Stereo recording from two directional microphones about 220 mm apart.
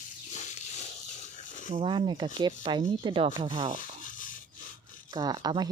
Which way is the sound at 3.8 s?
35° left (ahead or behind).